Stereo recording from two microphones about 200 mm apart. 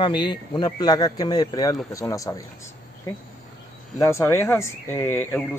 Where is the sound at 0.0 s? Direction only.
20° left (ahead or behind).